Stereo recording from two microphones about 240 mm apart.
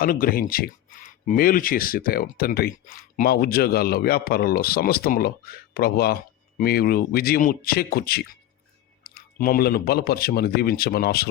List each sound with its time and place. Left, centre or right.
0.0 s speech: left